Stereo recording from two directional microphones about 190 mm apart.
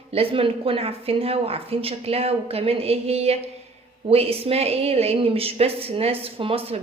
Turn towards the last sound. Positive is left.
turn(degrees=-30)  # may be behind; listen again after turning